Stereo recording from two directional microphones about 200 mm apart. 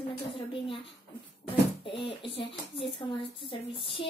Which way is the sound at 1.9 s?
25° left (ahead or behind).